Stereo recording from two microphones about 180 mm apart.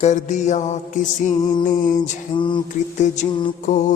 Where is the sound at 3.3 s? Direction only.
25° left (ahead or behind).